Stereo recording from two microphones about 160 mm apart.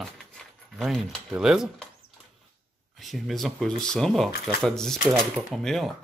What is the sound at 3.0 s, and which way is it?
Speech, centre (ahead or behind).